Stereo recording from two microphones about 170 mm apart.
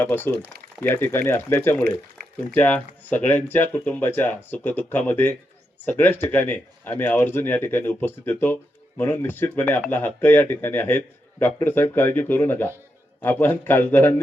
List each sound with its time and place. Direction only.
0.0 s speech: 15° left (ahead or behind)
1.8 s speech: 65° right (ahead or behind)
2.6 s speech: 10° left (ahead or behind)